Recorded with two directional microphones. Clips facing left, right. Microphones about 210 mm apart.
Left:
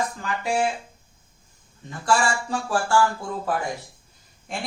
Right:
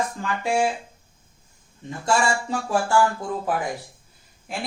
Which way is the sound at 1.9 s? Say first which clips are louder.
Right 1 dB; 25° right (ahead or behind).